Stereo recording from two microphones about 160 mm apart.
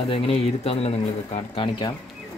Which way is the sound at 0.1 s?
35° left (ahead or behind).